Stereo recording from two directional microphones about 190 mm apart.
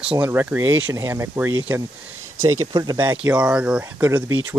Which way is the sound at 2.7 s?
20° right (ahead or behind).